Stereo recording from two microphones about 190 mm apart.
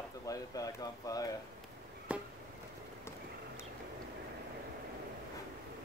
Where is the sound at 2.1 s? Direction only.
5° right (ahead or behind).